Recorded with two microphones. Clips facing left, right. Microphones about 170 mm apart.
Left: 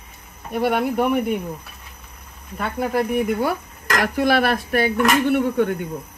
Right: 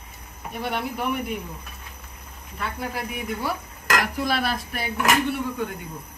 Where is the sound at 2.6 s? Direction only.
55° left (ahead or behind).